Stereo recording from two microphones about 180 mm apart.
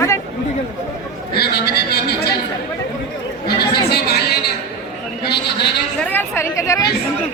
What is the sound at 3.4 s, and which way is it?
Chatter, 60° left (ahead or behind).